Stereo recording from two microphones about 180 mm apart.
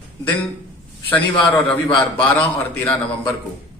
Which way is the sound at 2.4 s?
10° left (ahead or behind).